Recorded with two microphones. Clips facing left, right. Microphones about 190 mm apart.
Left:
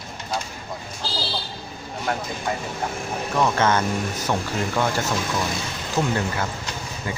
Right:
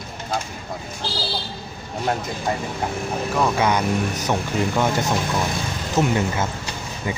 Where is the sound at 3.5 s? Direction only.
15° right (ahead or behind).